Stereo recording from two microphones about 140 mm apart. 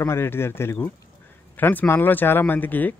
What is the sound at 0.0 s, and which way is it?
Speech, 15° left (ahead or behind).